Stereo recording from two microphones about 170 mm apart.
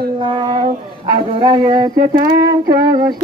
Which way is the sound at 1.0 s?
25° right (ahead or behind).